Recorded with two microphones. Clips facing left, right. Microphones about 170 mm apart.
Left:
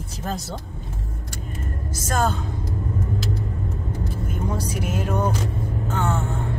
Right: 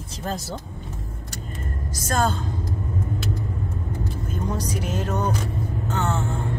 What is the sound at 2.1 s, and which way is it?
Speech, 5° left (ahead or behind).